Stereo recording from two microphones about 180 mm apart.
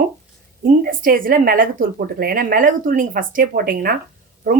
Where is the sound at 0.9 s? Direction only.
50° right (ahead or behind).